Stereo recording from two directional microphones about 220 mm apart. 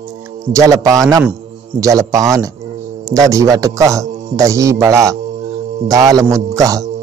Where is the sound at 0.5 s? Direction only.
15° right (ahead or behind).